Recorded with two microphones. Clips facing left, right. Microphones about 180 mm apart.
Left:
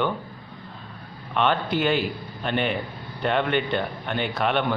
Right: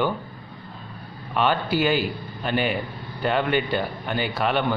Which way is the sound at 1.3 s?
5° right (ahead or behind).